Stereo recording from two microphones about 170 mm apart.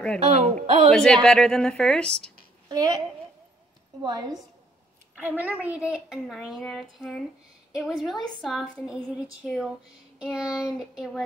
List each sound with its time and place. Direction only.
0.2 s speech: 40° right (ahead or behind)
0.9 s a woman's voice: 5° left (ahead or behind)
2.7 s a woman's voice: 20° right (ahead or behind)
4.0 s a woman's voice: 20° right (ahead or behind)
5.2 s a woman's voice: 10° right (ahead or behind)